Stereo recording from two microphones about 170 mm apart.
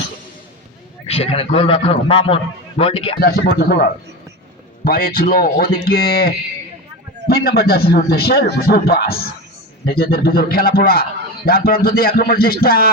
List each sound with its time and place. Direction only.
1.0 s a man's voice: 35° left (ahead or behind)
3.2 s speech: 70° left (ahead or behind)
4.9 s a man's voice: 60° left (ahead or behind)